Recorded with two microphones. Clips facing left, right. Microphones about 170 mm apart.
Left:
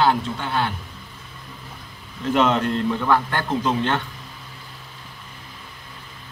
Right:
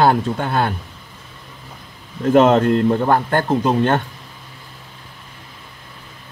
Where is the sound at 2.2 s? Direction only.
45° right (ahead or behind).